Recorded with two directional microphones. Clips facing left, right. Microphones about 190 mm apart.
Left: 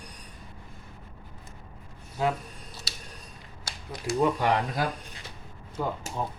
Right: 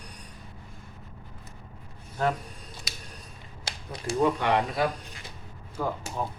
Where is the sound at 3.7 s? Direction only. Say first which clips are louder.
Left 1 dB; 30° right (ahead or behind).